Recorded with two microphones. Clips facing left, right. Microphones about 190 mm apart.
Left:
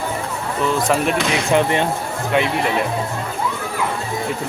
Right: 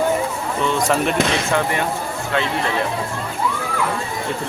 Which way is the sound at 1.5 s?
20° left (ahead or behind).